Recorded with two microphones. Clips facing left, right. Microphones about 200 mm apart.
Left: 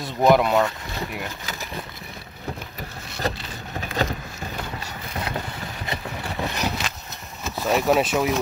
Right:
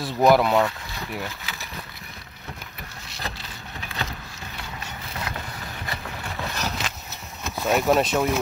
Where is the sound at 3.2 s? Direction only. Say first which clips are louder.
Left 9 dB; 45° left (ahead or behind).